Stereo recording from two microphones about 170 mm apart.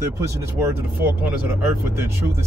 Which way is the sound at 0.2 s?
15° right (ahead or behind).